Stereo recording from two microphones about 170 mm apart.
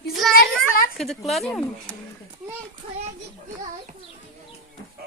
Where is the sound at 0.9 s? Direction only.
Centre (ahead or behind).